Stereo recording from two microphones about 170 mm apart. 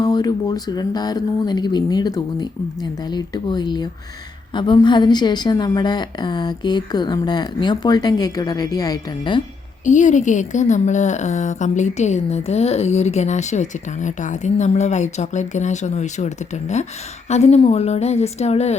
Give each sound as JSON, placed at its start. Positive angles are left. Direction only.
{"t": 0.0, "sound": "a woman's voice", "side_deg": 25}
{"t": 9.8, "sound": "a woman's voice", "side_deg": 45}